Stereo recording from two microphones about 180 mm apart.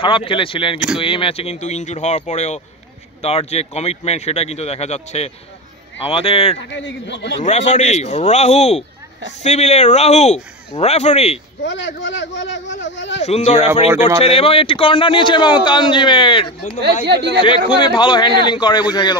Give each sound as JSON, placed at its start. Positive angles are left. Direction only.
{"t": 0.0, "sound": "a man's voice", "side_deg": 30}
{"t": 6.7, "sound": "speech", "side_deg": 90}
{"t": 7.4, "sound": "speech", "side_deg": 40}
{"t": 11.6, "sound": "speech", "side_deg": 90}
{"t": 13.2, "sound": "a man's voice", "side_deg": 35}
{"t": 17.0, "sound": "speech", "side_deg": -65}
{"t": 17.7, "sound": "a man's voice", "side_deg": 25}